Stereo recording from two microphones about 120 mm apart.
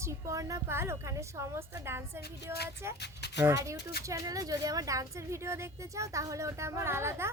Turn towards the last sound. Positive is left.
turn(degrees=-20)  # may be behind; listen again after turning